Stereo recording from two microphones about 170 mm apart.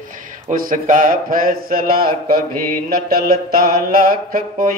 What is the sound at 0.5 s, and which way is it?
Mantra, 55° right (ahead or behind).